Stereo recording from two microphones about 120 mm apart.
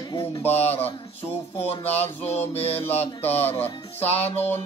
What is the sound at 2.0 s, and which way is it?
Music, 60° left (ahead or behind).